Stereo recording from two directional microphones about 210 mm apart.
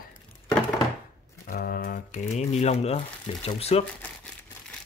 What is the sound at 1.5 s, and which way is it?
Speech, 45° left (ahead or behind).